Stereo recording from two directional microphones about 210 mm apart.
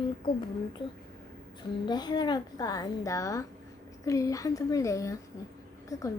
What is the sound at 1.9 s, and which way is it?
A woman's voice, 20° left (ahead or behind).